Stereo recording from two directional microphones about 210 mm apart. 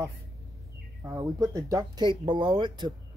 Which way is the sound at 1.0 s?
15° right (ahead or behind).